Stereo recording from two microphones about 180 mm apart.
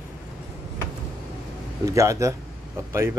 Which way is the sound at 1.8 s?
15° right (ahead or behind).